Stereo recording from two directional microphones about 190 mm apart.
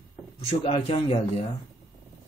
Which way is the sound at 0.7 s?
35° left (ahead or behind).